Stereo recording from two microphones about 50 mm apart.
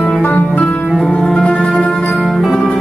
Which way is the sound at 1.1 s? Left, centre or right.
Centre.